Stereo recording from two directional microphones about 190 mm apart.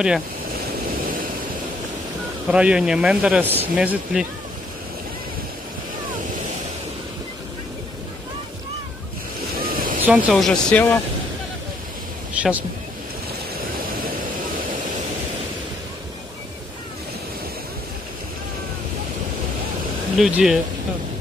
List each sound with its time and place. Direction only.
2.5 s a man's voice: 5° right (ahead or behind)
9.6 s vehicle: 45° right (ahead or behind)
10.0 s a man's voice: centre (ahead or behind)
12.4 s speech: 5° right (ahead or behind)
20.2 s a man's voice: 5° right (ahead or behind)